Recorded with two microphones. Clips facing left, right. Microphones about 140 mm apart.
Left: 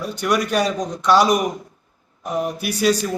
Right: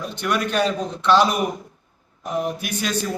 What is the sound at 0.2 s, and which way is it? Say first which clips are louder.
Speech: left 2 dB; 10° left (ahead or behind).